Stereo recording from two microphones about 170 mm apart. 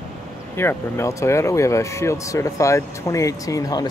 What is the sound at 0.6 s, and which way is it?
Speech, 15° left (ahead or behind).